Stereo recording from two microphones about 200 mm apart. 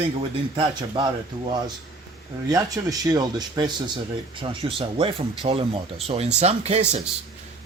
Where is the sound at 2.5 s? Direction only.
15° right (ahead or behind).